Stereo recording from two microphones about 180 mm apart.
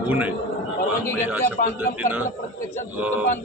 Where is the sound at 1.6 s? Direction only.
60° left (ahead or behind).